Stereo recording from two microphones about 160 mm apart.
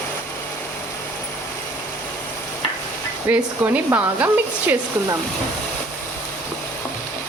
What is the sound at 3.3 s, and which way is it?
Speech, 10° right (ahead or behind).